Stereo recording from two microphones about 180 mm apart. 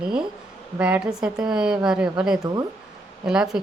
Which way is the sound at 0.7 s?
5° right (ahead or behind).